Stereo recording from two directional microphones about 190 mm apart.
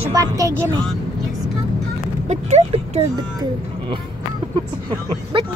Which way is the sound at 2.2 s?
35° right (ahead or behind).